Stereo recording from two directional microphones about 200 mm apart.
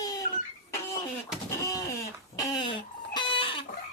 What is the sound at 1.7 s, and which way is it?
Music, 15° left (ahead or behind).